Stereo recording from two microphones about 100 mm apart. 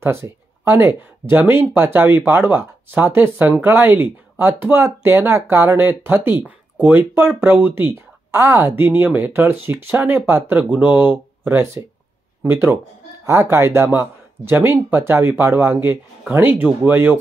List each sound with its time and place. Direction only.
0.0 s speech: 25° right (ahead or behind)